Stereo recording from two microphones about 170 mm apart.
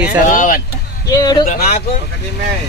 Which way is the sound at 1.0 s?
20° left (ahead or behind).